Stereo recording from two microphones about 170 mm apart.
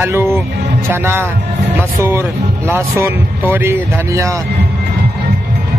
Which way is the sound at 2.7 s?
15° right (ahead or behind).